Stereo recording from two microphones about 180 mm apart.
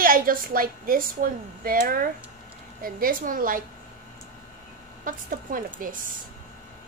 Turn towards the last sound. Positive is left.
turn(degrees=-50)  # may be behind; listen again after turning